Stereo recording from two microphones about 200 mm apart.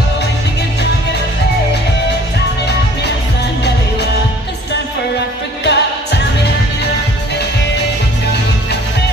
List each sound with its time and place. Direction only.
5.6 s music: 55° left (ahead or behind)